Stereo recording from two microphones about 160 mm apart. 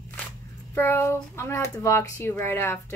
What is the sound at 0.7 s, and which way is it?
Speech, 15° left (ahead or behind).